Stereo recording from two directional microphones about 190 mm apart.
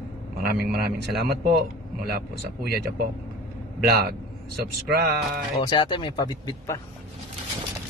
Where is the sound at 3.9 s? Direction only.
55° right (ahead or behind).